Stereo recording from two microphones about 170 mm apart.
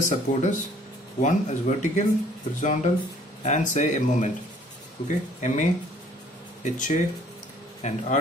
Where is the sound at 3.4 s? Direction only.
45° left (ahead or behind).